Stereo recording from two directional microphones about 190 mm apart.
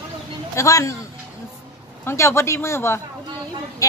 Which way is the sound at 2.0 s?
15° left (ahead or behind).